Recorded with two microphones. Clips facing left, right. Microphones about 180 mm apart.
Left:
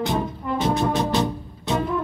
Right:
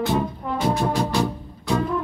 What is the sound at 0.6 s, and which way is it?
Music, 20° left (ahead or behind).